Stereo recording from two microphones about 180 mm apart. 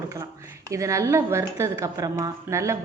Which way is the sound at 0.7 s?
15° right (ahead or behind).